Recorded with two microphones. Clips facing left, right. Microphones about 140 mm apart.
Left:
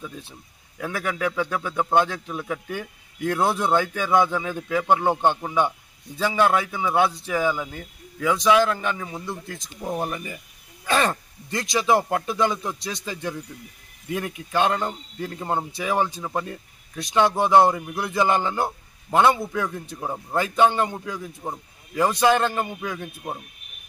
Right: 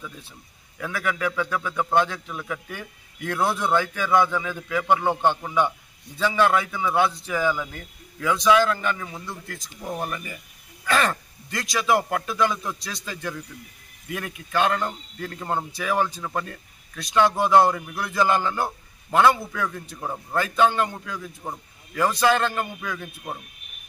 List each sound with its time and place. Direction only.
0.7 s speech: 20° left (ahead or behind)
6.7 s a man's voice: 15° left (ahead or behind)